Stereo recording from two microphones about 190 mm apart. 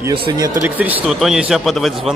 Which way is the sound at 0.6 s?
10° right (ahead or behind).